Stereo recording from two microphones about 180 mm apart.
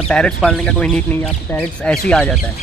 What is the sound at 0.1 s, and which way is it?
Speech, 5° left (ahead or behind).